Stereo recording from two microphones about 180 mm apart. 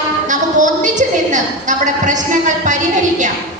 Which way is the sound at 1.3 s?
45° right (ahead or behind).